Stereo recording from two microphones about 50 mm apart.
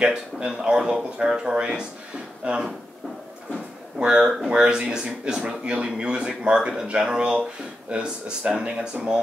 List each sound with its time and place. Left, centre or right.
0.0 s speech: right
4.0 s speech: centre